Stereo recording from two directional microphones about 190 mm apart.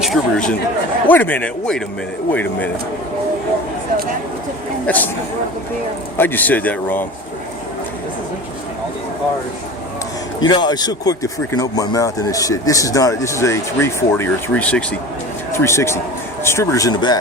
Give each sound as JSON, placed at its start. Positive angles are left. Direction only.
{"t": 0.0, "sound": "speech", "side_deg": 0}
{"t": 4.9, "sound": "speech", "side_deg": 10}
{"t": 6.1, "sound": "speech", "side_deg": 10}
{"t": 10.4, "sound": "speech", "side_deg": 25}